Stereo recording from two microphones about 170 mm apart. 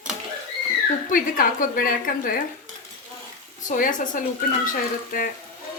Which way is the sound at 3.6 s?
50° left (ahead or behind).